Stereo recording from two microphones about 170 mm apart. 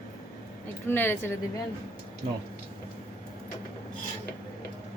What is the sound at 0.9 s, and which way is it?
Speech, 10° left (ahead or behind).